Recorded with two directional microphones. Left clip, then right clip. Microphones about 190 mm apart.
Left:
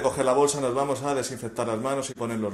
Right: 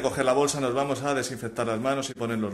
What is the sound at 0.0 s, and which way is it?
A man's voice, 15° right (ahead or behind).